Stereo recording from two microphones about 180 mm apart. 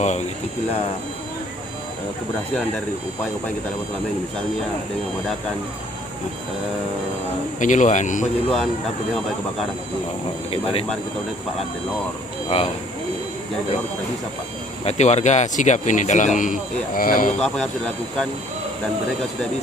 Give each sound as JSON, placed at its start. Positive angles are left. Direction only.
{"t": 7.6, "sound": "speech", "side_deg": 45}
{"t": 10.5, "sound": "speech", "side_deg": 30}
{"t": 12.5, "sound": "speech", "side_deg": 35}
{"t": 14.8, "sound": "speech", "side_deg": 40}
{"t": 17.4, "sound": "speech", "side_deg": 5}